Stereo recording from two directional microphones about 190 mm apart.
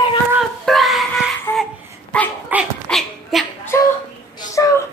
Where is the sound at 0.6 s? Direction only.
Centre (ahead or behind).